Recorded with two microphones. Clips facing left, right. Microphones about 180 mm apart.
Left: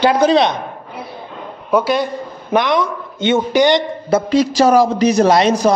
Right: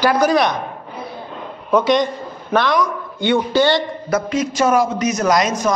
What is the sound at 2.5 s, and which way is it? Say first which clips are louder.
A man's voice: left 1 dB; 20° left (ahead or behind).